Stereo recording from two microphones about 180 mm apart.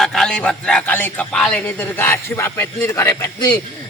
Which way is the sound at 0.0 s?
Centre (ahead or behind).